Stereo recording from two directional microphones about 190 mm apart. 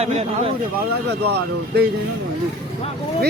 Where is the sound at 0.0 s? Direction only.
30° right (ahead or behind).